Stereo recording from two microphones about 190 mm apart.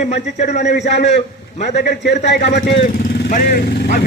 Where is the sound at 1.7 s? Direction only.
60° left (ahead or behind).